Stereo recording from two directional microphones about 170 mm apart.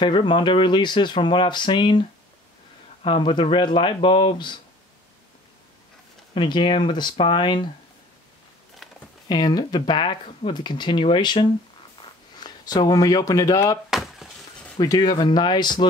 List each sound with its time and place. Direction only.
0.0 s speech: 30° left (ahead or behind)
6.3 s speech: 30° left (ahead or behind)
8.8 s a sound: centre (ahead or behind)
9.3 s speech: 25° left (ahead or behind)
12.4 s speech: 25° left (ahead or behind)
13.8 s a sound: centre (ahead or behind)
14.8 s speech: 25° left (ahead or behind)